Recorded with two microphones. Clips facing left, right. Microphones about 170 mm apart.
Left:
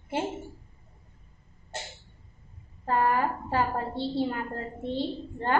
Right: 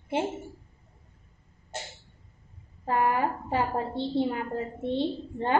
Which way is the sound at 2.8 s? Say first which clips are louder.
Even; 15° right (ahead or behind).